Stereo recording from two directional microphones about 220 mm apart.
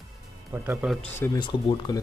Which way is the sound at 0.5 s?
10° right (ahead or behind).